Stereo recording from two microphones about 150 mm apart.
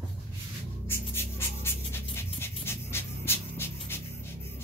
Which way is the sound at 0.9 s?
15° left (ahead or behind).